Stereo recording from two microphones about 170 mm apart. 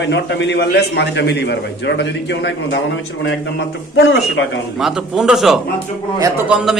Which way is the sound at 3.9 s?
90° left.